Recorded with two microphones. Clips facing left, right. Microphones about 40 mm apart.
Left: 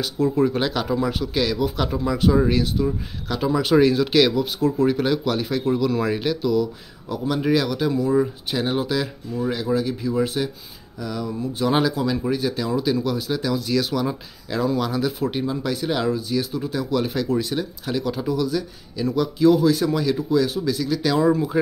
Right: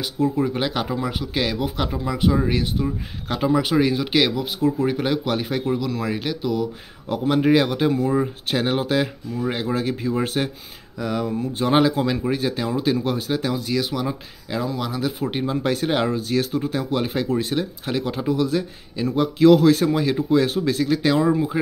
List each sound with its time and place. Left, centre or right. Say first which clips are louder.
0.0 s speech: left 2 dB; centre
1.3 s speech: even; right
1.8 s speech: left 1 dB; centre
2.5 s speech: left 2 dB; right
5.7 s speech: left 5 dB; centre
6.4 s speech: left 3 dB; right
11.9 s speech: right 1 dB; right
13.7 s speech: left 2 dB; centre
15.3 s speech: right 2 dB; right
16.2 s speech: right 2 dB; right
19.4 s speech: right 3 dB; right